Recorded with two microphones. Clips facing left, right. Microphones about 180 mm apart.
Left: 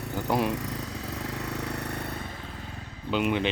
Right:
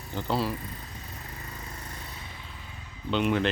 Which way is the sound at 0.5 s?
80° left.